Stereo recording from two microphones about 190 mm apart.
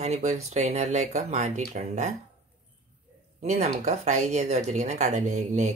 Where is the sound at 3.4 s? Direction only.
35° right (ahead or behind).